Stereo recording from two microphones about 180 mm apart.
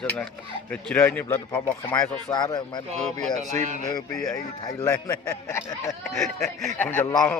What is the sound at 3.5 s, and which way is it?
Speech, 40° right (ahead or behind).